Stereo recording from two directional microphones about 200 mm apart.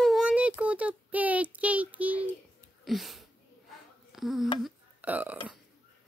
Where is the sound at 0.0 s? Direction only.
5° right (ahead or behind).